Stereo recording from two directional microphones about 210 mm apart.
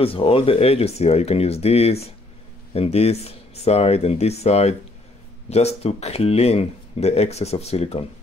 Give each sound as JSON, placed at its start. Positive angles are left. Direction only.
{"t": 0.0, "sound": "speech", "side_deg": 25}